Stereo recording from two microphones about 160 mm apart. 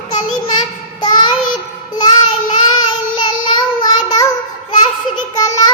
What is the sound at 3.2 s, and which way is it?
Child singing, 25° left (ahead or behind).